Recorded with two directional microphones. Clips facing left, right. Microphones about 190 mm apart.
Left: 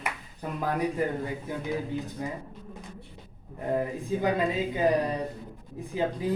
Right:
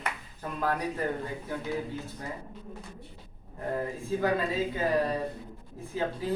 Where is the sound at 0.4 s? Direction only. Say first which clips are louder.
Left 3 dB; 15° left (ahead or behind).